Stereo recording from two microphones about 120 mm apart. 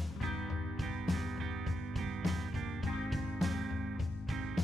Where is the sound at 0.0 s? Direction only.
Centre (ahead or behind).